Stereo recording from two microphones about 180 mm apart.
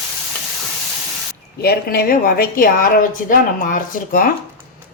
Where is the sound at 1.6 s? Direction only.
60° left (ahead or behind).